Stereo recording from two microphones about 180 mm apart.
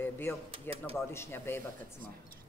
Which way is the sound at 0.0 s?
10° left (ahead or behind).